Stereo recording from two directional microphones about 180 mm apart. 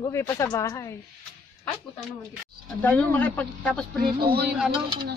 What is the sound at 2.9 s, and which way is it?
A woman's voice, 10° left (ahead or behind).